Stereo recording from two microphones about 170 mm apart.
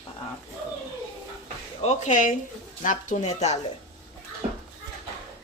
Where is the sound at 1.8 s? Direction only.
45° left (ahead or behind).